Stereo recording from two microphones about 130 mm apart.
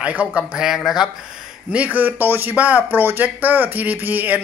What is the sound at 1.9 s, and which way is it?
Speech, 15° right (ahead or behind).